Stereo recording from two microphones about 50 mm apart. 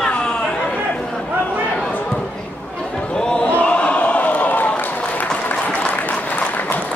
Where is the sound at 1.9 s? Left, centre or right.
Centre.